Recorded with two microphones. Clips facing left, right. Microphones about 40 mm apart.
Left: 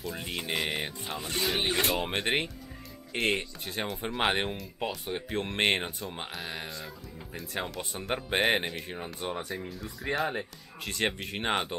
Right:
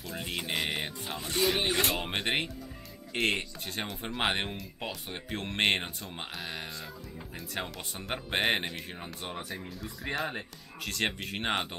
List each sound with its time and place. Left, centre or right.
0.0 s speech: centre